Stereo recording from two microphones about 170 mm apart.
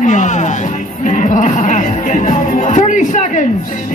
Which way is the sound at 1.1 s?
45° left (ahead or behind).